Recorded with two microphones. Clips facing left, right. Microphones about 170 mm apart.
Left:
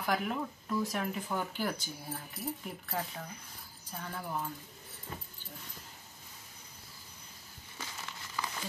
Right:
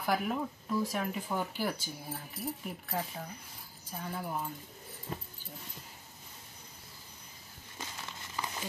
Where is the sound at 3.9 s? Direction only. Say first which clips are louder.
Right 1 dB; 10° right (ahead or behind).